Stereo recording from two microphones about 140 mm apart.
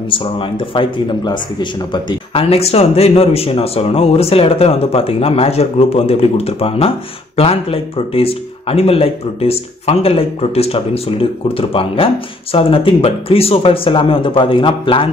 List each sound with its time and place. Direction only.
0.1 s speech: 35° left (ahead or behind)
2.5 s speech: 45° left (ahead or behind)